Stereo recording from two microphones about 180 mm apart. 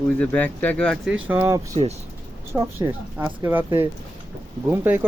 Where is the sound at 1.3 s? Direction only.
15° right (ahead or behind).